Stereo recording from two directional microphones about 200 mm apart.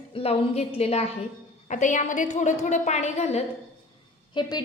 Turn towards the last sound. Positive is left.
turn(degrees=20)  # may be behind; listen again after turning